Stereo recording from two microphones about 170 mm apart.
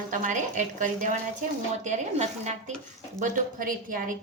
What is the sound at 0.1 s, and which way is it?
A woman's voice, 50° right (ahead or behind).